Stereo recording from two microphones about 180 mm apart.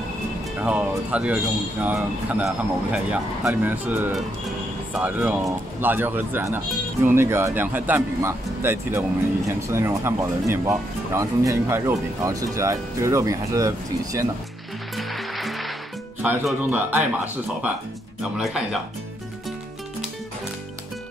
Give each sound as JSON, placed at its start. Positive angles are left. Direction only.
{"t": 0.6, "sound": "speech", "side_deg": -5}
{"t": 15.0, "sound": "music", "side_deg": 0}
{"t": 16.2, "sound": "speech", "side_deg": -10}